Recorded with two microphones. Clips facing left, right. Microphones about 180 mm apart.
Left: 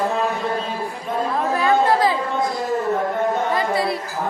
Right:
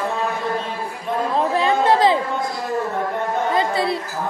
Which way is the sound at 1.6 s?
25° right (ahead or behind).